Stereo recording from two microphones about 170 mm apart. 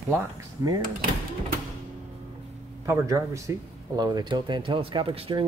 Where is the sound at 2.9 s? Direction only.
15° right (ahead or behind).